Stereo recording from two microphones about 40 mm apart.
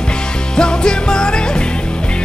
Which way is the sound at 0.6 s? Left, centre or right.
Left.